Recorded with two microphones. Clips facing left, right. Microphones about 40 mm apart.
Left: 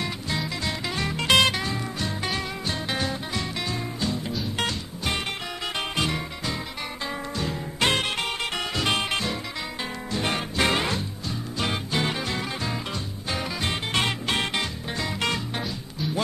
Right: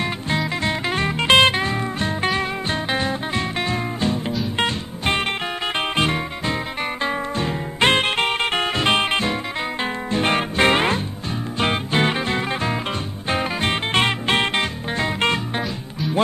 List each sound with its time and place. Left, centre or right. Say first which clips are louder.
0.7 s music: right 7 dB; right